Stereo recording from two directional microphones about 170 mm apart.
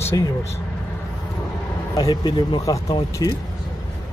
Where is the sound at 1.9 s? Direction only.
25° left (ahead or behind).